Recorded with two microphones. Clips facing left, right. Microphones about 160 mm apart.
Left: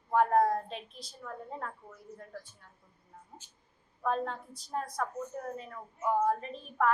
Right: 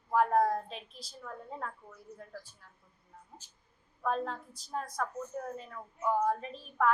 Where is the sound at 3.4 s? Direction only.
40° right (ahead or behind).